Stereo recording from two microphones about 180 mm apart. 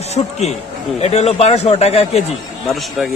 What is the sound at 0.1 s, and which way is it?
A man's voice, 35° left (ahead or behind).